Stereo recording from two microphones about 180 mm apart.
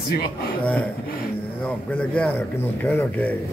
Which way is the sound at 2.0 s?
10° left (ahead or behind).